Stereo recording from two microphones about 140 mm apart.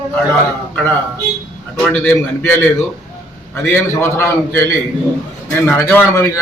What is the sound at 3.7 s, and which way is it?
A man's voice, 20° left (ahead or behind).